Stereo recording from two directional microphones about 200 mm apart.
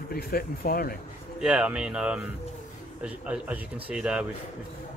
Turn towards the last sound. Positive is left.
turn(degrees=-5)  # may be behind; listen again after turning